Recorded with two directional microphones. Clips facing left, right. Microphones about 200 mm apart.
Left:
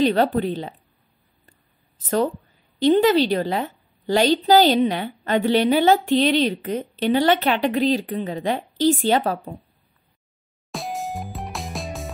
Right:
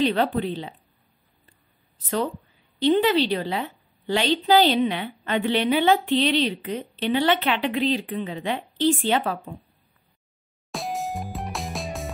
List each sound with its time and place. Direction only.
0.0 s a woman's voice: 40° left (ahead or behind)
2.0 s a woman's voice: 45° left (ahead or behind)
10.7 s music: centre (ahead or behind)